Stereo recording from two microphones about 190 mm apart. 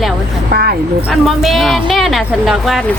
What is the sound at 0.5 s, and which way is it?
Speech, 55° right (ahead or behind).